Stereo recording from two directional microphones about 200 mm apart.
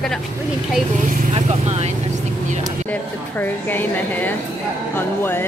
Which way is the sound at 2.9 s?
10° left (ahead or behind).